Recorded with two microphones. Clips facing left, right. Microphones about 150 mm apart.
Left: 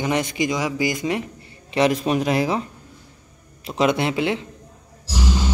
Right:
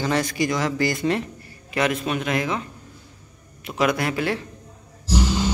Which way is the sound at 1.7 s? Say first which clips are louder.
Left 4 dB; 30° left (ahead or behind).